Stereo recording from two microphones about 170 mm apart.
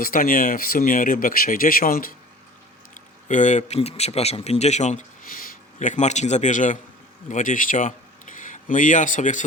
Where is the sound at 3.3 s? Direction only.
45° left (ahead or behind).